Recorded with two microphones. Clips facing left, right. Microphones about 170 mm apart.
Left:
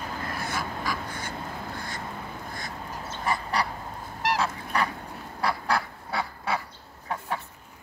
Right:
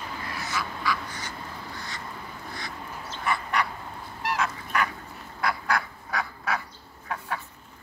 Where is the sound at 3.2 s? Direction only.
35° left (ahead or behind).